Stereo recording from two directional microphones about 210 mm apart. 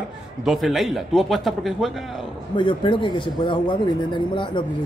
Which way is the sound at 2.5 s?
25° left (ahead or behind).